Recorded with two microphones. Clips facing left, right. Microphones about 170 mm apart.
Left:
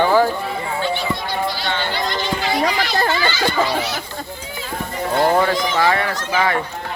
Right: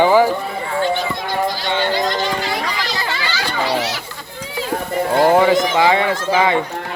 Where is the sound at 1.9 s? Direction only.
45° right (ahead or behind).